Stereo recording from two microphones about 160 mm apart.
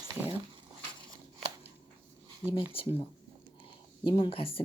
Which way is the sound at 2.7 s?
35° left (ahead or behind).